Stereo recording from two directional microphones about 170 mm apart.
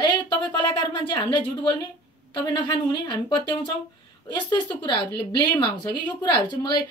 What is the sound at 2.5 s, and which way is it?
A woman's voice, 25° left (ahead or behind).